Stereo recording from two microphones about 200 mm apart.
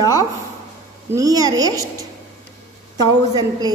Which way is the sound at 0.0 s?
20° left (ahead or behind).